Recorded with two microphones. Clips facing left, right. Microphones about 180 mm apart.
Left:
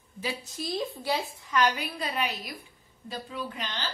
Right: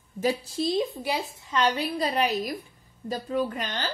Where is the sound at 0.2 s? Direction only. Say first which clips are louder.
Right 9 dB; 35° right (ahead or behind); by 1.2 s 15° right (ahead or behind).